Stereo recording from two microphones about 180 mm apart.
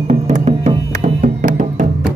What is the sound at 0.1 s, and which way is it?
Music, 40° right (ahead or behind).